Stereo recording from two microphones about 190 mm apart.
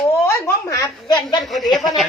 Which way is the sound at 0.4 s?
20° left (ahead or behind).